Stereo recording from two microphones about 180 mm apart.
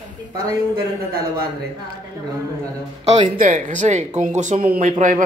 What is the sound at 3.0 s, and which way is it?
Speech, 35° right (ahead or behind).